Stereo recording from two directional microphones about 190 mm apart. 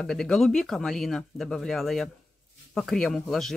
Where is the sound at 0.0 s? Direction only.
5° left (ahead or behind).